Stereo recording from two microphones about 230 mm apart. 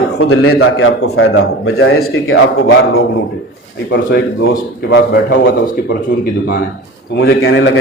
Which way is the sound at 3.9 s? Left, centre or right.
Left.